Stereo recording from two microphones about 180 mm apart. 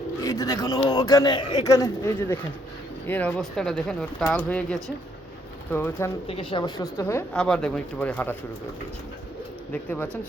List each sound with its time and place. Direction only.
0.2 s a man's voice: 15° left (ahead or behind)
6.2 s a man's voice: 30° left (ahead or behind)
7.3 s speech: 5° left (ahead or behind)
9.7 s speech: 10° left (ahead or behind)